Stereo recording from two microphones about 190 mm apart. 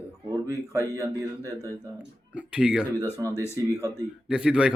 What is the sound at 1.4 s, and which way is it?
Speech, 15° left (ahead or behind).